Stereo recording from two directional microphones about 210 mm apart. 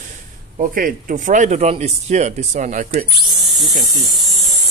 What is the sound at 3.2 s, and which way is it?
Speech, centre (ahead or behind).